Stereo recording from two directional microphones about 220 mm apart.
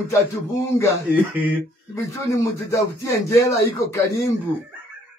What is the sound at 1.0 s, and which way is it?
Speech, 5° right (ahead or behind).